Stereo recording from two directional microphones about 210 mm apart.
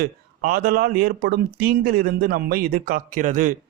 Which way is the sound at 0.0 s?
45° right (ahead or behind).